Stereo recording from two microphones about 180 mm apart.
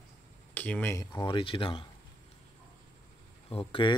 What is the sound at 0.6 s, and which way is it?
Speech, 10° left (ahead or behind).